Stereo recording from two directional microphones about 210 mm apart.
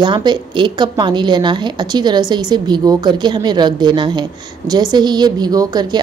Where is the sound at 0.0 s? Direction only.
20° right (ahead or behind).